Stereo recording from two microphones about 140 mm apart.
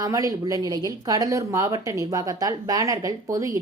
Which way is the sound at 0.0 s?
25° right (ahead or behind).